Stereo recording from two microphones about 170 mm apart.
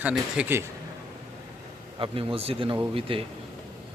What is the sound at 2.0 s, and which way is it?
Speech, 30° right (ahead or behind).